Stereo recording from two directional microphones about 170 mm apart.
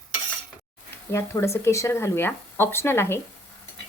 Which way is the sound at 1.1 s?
15° left (ahead or behind).